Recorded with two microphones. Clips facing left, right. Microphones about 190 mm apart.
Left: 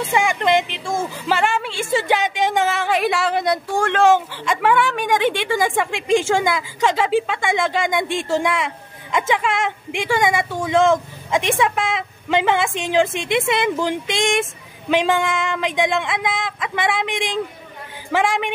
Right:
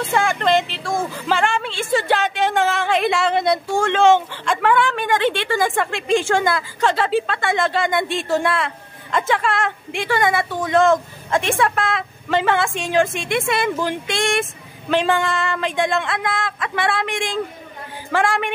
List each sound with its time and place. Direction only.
0.1 s speech: 10° left (ahead or behind)
1.3 s speech: 10° left (ahead or behind)